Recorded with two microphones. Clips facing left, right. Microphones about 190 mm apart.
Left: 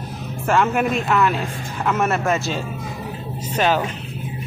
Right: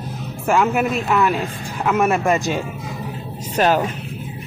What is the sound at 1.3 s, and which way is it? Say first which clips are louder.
A woman's voice: right 1 dB; 10° right (ahead or behind).